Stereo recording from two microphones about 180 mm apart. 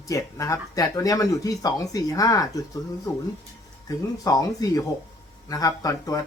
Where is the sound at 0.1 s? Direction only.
15° left (ahead or behind).